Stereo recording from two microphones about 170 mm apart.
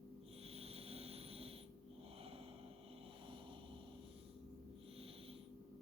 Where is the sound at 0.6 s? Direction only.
35° right (ahead or behind).